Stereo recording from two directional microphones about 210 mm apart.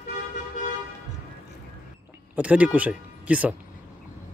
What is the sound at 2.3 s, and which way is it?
Speech, 5° right (ahead or behind).